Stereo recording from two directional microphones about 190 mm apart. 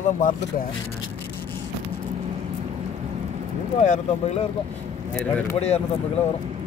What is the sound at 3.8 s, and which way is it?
Speech, 35° left (ahead or behind).